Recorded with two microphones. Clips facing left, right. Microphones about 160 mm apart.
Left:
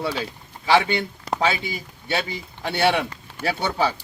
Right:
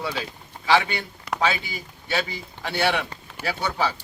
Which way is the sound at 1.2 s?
25° left (ahead or behind).